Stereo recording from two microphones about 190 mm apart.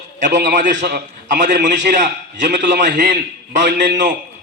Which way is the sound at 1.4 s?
65° right (ahead or behind).